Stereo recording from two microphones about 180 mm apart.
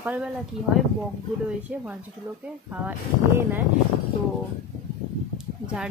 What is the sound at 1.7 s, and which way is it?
Speech, 5° right (ahead or behind).